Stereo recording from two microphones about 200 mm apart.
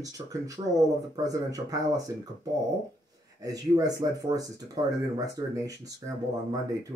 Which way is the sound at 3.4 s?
15° right (ahead or behind).